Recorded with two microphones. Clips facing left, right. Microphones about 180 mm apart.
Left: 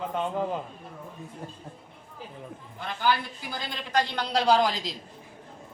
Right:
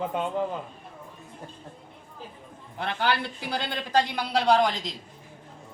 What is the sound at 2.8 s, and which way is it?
A man's voice, 70° right (ahead or behind).